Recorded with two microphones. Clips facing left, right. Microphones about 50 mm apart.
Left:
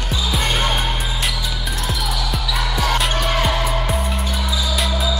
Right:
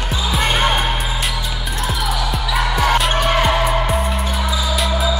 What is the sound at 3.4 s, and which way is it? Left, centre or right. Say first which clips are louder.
Music: right 4 dB; centre.